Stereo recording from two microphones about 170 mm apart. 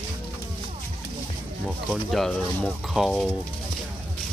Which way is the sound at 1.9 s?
Centre (ahead or behind).